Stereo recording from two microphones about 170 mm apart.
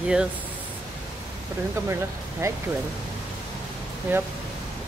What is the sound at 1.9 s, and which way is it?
Speech, 15° right (ahead or behind).